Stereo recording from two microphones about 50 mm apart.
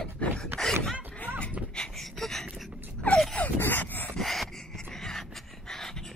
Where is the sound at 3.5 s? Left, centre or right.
Left.